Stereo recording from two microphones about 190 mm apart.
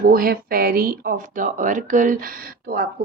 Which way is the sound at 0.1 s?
50° right (ahead or behind).